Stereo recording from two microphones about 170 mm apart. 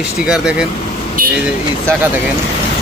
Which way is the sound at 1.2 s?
55° right (ahead or behind).